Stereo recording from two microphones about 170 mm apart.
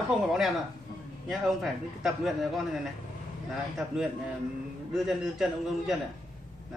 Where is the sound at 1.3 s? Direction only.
Centre (ahead or behind).